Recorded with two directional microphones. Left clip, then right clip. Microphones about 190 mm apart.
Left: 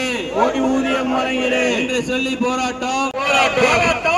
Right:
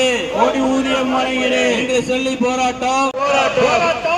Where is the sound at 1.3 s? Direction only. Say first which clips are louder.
Right 2 dB; 35° right (ahead or behind).